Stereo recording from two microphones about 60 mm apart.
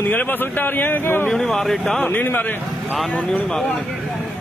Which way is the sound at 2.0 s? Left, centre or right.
Left.